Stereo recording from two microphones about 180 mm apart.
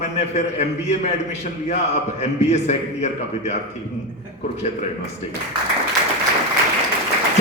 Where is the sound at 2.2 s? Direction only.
40° left (ahead or behind).